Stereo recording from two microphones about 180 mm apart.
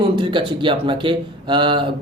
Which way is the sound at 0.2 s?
25° right (ahead or behind).